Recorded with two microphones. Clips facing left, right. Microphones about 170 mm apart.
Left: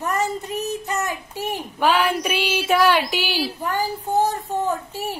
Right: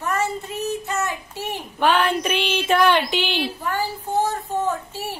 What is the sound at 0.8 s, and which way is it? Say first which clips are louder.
Child singing: even; 40° left (ahead or behind).